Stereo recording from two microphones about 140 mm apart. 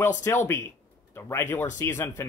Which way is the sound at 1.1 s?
15° left (ahead or behind).